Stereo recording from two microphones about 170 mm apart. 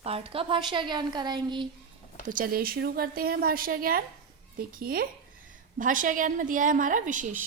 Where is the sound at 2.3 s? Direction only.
55° right (ahead or behind).